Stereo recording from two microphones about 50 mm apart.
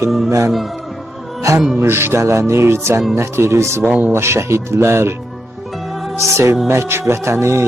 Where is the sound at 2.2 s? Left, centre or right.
Right.